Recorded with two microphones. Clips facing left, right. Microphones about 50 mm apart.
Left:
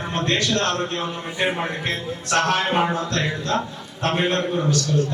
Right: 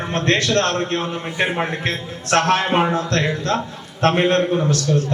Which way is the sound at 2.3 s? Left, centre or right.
Right.